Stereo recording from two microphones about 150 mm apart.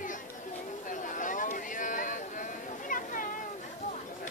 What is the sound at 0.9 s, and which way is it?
Chatter, 60° left (ahead or behind).